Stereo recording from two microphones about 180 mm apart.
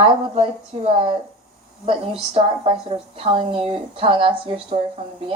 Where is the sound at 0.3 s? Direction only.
30° right (ahead or behind).